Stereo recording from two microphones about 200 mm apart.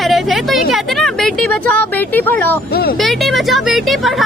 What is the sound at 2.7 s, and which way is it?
Speech, 50° left (ahead or behind).